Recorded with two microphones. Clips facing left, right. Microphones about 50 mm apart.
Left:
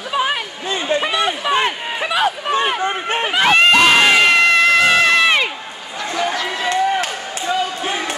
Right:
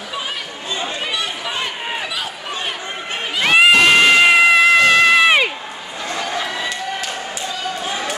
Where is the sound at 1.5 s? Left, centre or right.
Left.